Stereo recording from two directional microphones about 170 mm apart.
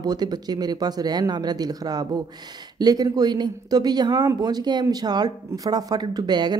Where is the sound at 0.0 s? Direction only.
25° right (ahead or behind).